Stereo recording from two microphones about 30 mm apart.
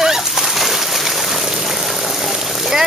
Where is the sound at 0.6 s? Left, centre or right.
Centre.